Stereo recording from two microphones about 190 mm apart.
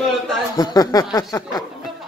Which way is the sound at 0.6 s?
20° left (ahead or behind).